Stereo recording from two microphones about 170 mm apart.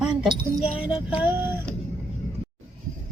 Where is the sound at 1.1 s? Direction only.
10° right (ahead or behind).